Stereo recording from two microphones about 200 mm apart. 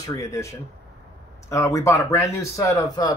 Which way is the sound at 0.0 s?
15° left (ahead or behind).